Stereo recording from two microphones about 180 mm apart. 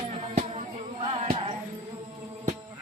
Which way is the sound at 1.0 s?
35° right (ahead or behind).